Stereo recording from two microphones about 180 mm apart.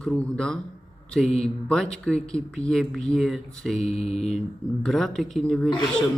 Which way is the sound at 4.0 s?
35° left (ahead or behind).